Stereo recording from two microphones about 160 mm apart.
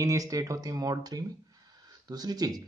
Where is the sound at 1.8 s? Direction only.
25° right (ahead or behind).